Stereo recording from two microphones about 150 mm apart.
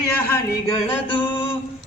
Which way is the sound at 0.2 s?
15° left (ahead or behind).